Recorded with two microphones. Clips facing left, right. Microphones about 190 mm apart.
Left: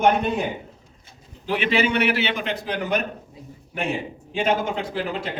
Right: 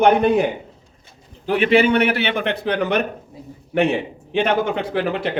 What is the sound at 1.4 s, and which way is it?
A man's voice, 50° right (ahead or behind).